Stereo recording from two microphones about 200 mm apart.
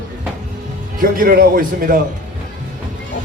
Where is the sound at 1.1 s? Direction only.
45° right (ahead or behind).